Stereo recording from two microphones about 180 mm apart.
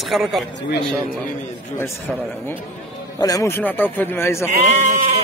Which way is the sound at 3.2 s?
15° left (ahead or behind).